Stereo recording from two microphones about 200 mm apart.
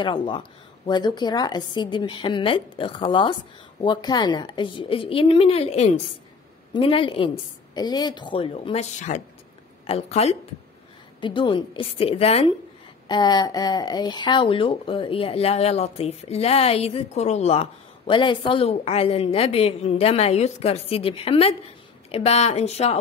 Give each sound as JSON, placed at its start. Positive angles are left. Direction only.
{"t": 0.0, "sound": "speech", "side_deg": 25}
{"t": 13.1, "sound": "speech", "side_deg": 20}